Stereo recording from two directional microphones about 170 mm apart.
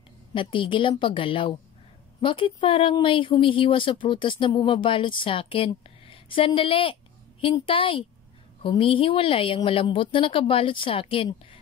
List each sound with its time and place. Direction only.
0.3 s a woman's voice: 30° left (ahead or behind)